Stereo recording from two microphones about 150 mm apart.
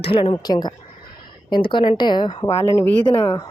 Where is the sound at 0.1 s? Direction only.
35° left (ahead or behind).